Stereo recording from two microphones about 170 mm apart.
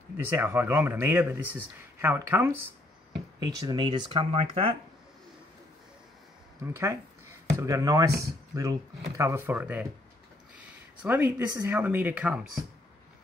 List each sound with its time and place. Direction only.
0.3 s speech: 10° right (ahead or behind); by 4.7 s 35° right (ahead or behind)
6.6 s speech: 15° right (ahead or behind)
11.0 s speech: 10° right (ahead or behind)